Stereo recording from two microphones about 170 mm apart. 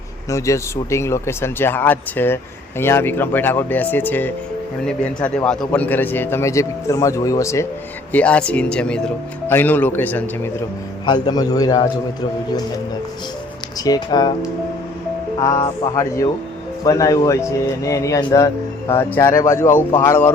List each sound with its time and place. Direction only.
0.3 s speech: 15° left (ahead or behind)
8.1 s speech: 5° left (ahead or behind)
11.0 s speech: 25° left (ahead or behind)
13.7 s speech: 20° left (ahead or behind)
15.4 s speech: 20° left (ahead or behind)